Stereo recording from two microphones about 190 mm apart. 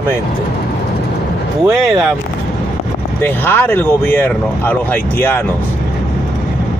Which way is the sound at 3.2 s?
10° left (ahead or behind).